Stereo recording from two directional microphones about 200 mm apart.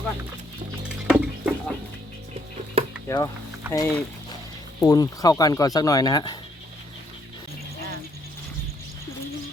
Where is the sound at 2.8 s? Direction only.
30° right (ahead or behind).